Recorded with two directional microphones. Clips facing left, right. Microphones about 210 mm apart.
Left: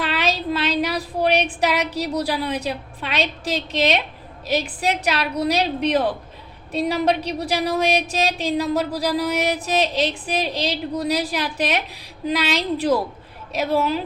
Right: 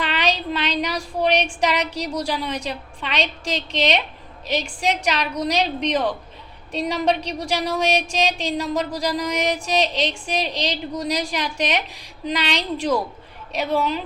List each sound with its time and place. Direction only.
0.0 s a woman's voice: 5° left (ahead or behind)
5.0 s a woman's voice: 5° left (ahead or behind)